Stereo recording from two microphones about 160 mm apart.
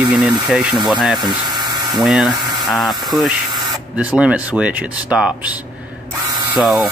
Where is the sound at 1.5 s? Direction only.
25° right (ahead or behind).